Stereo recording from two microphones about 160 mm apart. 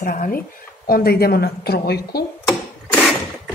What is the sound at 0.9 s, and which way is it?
A woman's voice, 75° left (ahead or behind).